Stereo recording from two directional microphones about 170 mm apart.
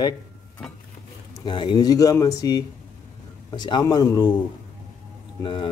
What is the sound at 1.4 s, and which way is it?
Speech, 30° left (ahead or behind).